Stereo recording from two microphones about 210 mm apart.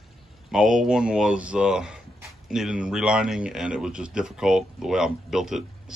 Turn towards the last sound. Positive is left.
turn(degrees=0)  # may be behind; listen again after turning